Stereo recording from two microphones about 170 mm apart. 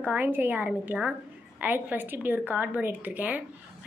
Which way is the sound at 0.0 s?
10° right (ahead or behind).